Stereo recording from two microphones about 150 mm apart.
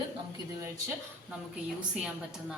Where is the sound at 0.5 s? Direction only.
20° right (ahead or behind).